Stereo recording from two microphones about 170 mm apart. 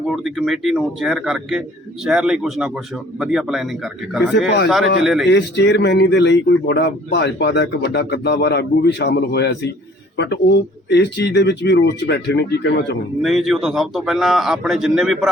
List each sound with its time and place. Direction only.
0.1 s a man's voice: centre (ahead or behind)
4.4 s a man's voice: 90° left
5.0 s a man's voice: centre (ahead or behind)
5.3 s a man's voice: 85° left
13.2 s a man's voice: centre (ahead or behind)